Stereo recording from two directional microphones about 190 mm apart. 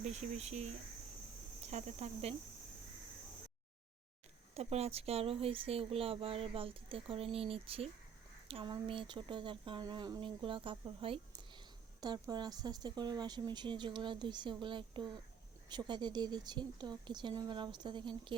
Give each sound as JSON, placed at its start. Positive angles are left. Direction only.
{"t": 0.0, "sound": "speech", "side_deg": -35}
{"t": 4.5, "sound": "speech", "side_deg": -35}